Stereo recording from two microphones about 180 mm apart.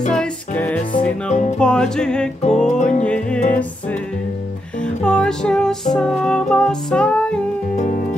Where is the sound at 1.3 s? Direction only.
40° left (ahead or behind).